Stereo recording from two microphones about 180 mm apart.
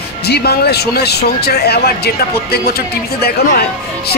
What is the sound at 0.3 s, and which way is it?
Speech, 60° left (ahead or behind).